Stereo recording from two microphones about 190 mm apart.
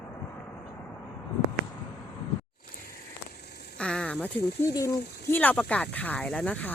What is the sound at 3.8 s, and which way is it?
Speech, 5° left (ahead or behind).